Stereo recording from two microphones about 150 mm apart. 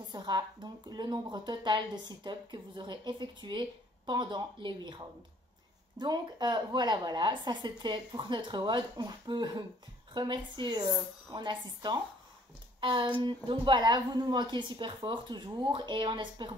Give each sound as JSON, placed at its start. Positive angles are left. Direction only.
{"t": 0.1, "sound": "a woman's voice", "side_deg": -30}